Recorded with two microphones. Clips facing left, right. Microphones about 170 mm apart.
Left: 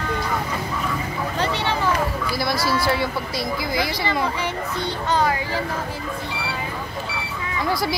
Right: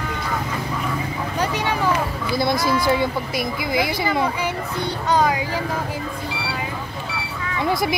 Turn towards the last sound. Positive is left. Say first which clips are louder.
# right 2 dB
turn(degrees=-20)  # may be behind; listen again after turning